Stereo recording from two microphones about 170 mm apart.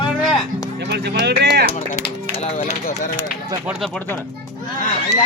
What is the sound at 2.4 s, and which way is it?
Speech, 45° left (ahead or behind).